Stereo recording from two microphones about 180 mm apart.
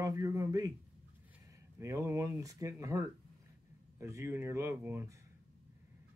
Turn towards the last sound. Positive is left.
turn(degrees=-15)  # may be behind; listen again after turning